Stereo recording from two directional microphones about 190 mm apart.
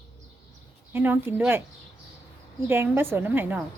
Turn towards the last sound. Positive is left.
turn(degrees=-10)  # may be behind; listen again after turning